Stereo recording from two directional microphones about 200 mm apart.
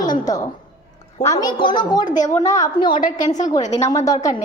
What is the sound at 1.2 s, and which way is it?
Speech, 20° left (ahead or behind).